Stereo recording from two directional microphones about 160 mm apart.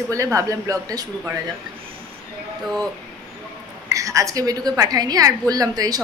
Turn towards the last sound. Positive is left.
turn(degrees=-25)  # may be behind; listen again after turning